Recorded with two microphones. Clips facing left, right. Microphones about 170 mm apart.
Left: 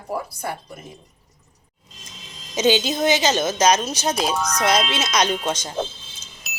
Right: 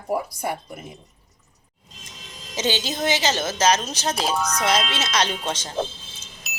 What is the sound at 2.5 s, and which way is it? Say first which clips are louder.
A woman's voice: left 6 dB; 15° left (ahead or behind).